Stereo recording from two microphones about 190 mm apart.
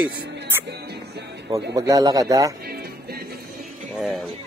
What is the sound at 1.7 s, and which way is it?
Speech, 20° right (ahead or behind).